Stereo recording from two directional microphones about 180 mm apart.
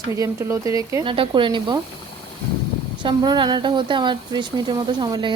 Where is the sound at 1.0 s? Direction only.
30° right (ahead or behind).